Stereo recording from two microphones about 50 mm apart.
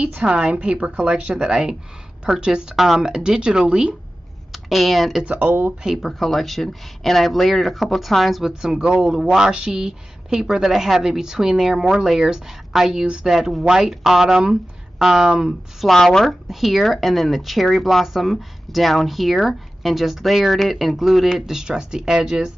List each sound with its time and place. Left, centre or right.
0.3 s a woman's voice: right
2.7 s speech: centre
3.0 s a woman's voice: centre
4.5 s speech: centre
5.2 s speech: right
6.0 s speech: centre
8.8 s a woman's voice: right
15.9 s a woman's voice: centre